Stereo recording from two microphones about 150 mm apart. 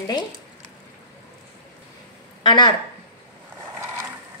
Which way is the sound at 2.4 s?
30° left (ahead or behind).